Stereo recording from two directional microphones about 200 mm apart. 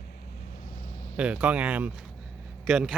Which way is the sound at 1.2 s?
5° right (ahead or behind).